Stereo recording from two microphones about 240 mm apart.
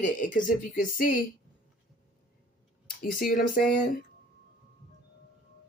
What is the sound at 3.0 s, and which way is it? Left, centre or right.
Speech, left.